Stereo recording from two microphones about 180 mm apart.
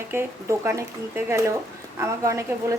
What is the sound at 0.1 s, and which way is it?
Speech, 15° right (ahead or behind).